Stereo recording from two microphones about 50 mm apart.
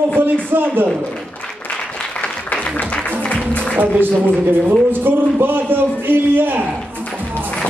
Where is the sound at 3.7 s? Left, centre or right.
Right.